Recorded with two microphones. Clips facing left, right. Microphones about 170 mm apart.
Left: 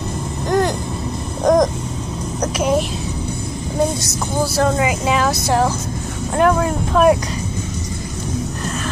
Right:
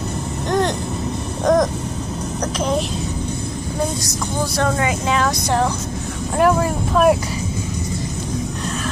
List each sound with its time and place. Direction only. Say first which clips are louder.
0.5 s vehicle: left 2 dB; 10° left (ahead or behind)
4.6 s speech: left 2 dB; 10° left (ahead or behind)